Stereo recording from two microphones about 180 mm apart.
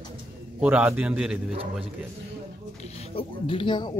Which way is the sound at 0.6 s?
10° right (ahead or behind).